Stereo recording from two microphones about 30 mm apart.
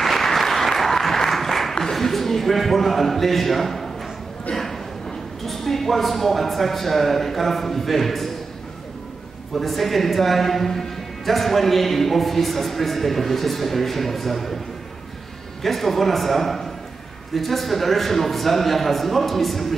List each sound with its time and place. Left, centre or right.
0.0 s applause: centre
2.0 s a man's voice: centre
4.5 s a sound: left
5.4 s a woman's voice: centre
9.6 s a woman's voice: centre
15.6 s a woman's voice: centre